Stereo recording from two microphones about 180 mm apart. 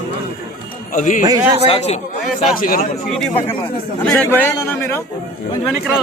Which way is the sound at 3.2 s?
10° left (ahead or behind).